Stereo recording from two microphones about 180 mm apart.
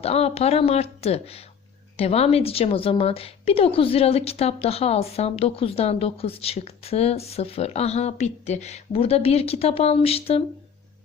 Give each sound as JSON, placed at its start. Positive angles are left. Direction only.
{"t": 0.0, "sound": "a woman's voice", "side_deg": 35}